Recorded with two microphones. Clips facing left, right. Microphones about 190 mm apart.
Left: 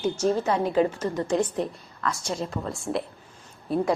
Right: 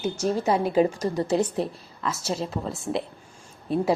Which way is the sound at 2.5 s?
Centre (ahead or behind).